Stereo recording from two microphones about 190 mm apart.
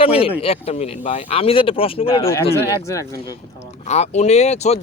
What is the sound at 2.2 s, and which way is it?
Speech, 15° left (ahead or behind).